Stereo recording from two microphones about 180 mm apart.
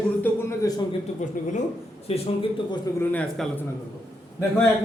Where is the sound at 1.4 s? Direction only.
45° left (ahead or behind).